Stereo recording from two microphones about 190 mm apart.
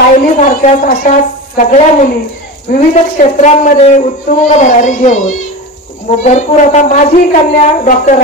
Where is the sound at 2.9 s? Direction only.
35° left (ahead or behind).